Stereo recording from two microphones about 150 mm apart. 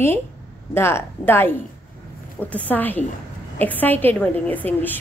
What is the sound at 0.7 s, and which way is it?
A woman's voice, 15° left (ahead or behind).